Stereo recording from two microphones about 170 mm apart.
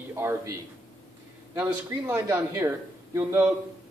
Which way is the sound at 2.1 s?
10° right (ahead or behind).